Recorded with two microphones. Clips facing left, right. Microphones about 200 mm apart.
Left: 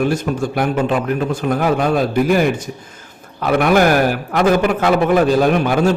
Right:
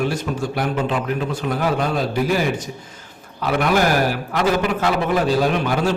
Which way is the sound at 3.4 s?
55° left (ahead or behind).